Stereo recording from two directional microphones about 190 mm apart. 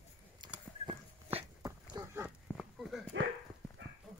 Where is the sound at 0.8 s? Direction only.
25° right (ahead or behind).